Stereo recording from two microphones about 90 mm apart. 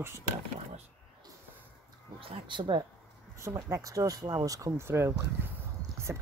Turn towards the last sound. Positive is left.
turn(degrees=-25)  # may be behind; listen again after turning